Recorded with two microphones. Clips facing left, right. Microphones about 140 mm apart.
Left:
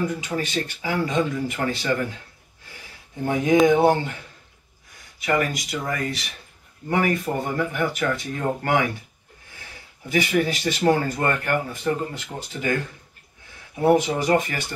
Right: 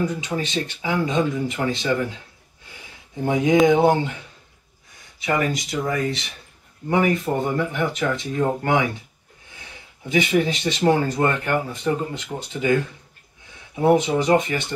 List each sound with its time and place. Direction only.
0.2 s speech: 20° right (ahead or behind)
3.3 s speech: 20° right (ahead or behind)
5.2 s speech: 25° right (ahead or behind)
13.7 s speech: 20° right (ahead or behind)